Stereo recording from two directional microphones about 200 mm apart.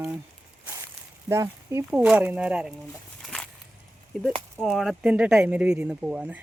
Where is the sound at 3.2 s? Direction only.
5° left (ahead or behind).